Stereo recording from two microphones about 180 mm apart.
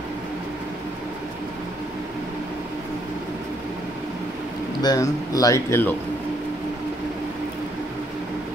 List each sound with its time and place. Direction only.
4.8 s speech: 20° left (ahead or behind)